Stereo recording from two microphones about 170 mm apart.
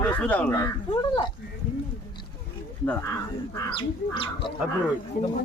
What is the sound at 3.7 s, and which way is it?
Speech, 30° left (ahead or behind).